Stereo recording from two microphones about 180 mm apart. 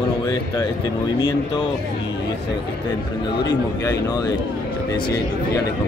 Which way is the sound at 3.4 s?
20° left (ahead or behind).